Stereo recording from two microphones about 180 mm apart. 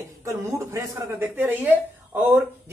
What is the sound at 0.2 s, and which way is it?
A man's voice, 15° right (ahead or behind).